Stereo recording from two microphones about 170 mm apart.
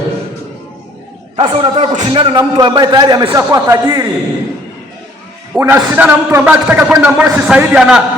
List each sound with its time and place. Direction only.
1.4 s a man's voice: 35° right (ahead or behind)
5.5 s a man's voice: 10° right (ahead or behind)